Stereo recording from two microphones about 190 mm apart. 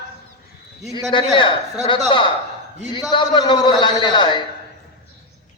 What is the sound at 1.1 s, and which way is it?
Speech, 25° left (ahead or behind).